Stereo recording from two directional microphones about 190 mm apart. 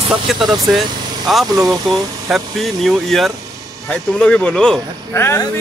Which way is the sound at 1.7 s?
Centre (ahead or behind).